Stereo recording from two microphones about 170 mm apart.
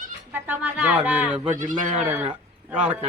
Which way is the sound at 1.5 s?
50° right (ahead or behind).